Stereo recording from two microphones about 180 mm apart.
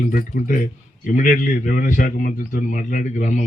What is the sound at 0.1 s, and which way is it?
A man's voice, 50° left (ahead or behind).